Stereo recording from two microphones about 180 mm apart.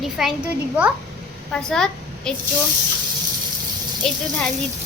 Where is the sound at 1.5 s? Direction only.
5° left (ahead or behind).